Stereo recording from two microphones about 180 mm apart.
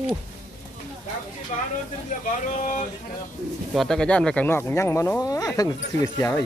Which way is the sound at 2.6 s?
45° left (ahead or behind).